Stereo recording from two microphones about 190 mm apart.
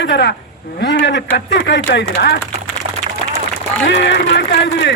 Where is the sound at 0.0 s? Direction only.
65° left (ahead or behind).